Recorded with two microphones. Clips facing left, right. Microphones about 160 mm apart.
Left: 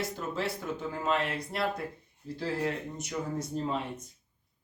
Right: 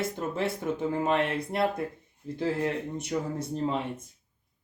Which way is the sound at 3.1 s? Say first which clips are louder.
Right 5 dB; 40° right (ahead or behind).